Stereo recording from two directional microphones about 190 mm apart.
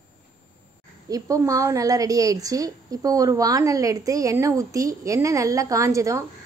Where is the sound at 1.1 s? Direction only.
15° right (ahead or behind).